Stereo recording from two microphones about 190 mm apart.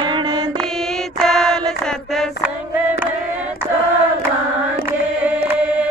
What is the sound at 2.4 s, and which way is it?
Female singing, 10° right (ahead or behind).